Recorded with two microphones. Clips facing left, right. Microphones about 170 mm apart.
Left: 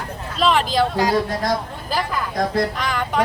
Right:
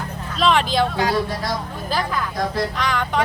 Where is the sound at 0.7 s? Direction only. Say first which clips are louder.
Left 1 dB; centre (ahead or behind).